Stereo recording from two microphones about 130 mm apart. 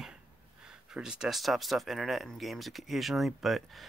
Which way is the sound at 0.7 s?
5° right (ahead or behind).